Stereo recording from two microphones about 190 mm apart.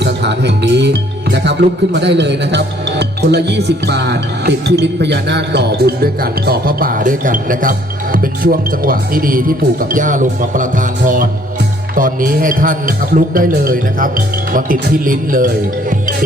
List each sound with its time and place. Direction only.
0.0 s speech: 65° right (ahead or behind); by 15.5 s 45° right (ahead or behind)